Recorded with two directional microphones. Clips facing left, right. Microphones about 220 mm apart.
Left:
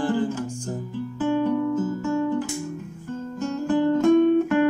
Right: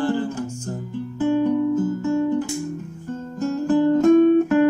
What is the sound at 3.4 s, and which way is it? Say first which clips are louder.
Music: right 4 dB; 35° right (ahead or behind).